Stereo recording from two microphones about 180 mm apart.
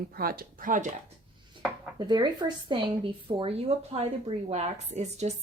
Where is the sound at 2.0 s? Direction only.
25° right (ahead or behind).